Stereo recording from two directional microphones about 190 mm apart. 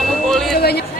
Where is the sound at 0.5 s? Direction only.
55° left (ahead or behind).